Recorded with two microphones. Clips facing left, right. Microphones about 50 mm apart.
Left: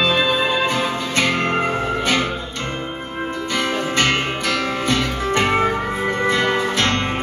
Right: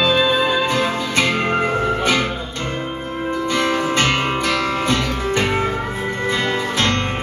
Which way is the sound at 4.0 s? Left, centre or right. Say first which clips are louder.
Right 1 dB; right.